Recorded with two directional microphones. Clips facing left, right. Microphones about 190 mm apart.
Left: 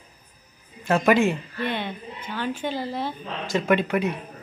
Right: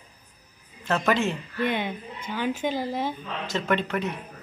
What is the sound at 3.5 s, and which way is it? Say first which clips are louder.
Speech: left 5 dB; 10° left (ahead or behind).